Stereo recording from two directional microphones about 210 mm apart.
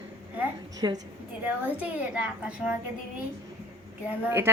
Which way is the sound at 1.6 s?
5° right (ahead or behind).